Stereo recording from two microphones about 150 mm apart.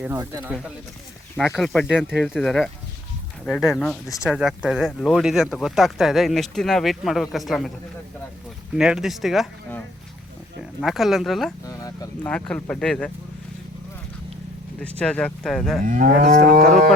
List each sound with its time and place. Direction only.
0.2 s speech: 10° right (ahead or behind)
1.4 s speech: 5° left (ahead or behind)
8.7 s speech: 5° right (ahead or behind)
10.6 s speech: centre (ahead or behind)
11.6 s a sound: 25° left (ahead or behind)
12.2 s speech: 10° left (ahead or behind)
14.8 s speech: 10° left (ahead or behind)
15.9 s livestock: 60° right (ahead or behind)